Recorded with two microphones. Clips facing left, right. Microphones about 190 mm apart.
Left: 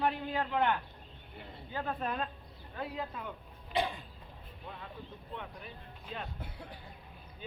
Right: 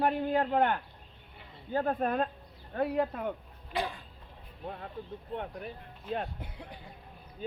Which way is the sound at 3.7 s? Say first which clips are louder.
Left 1 dB; 20° left (ahead or behind).